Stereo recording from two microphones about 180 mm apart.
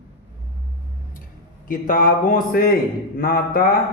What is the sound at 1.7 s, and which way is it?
A man's voice, 50° left (ahead or behind).